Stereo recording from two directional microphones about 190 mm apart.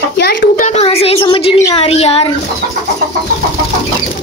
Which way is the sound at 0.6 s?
35° left (ahead or behind).